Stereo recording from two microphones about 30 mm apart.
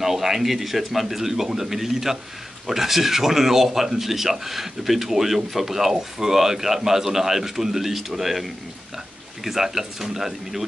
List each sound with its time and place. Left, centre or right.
0.0 s speech: centre